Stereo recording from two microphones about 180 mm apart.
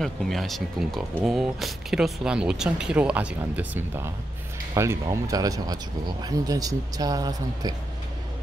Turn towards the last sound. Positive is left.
turn(degrees=-20)  # may be behind; listen again after turning